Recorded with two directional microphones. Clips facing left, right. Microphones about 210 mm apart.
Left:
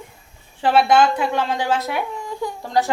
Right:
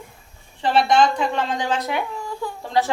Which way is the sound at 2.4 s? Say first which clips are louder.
Left 4 dB; 15° left (ahead or behind).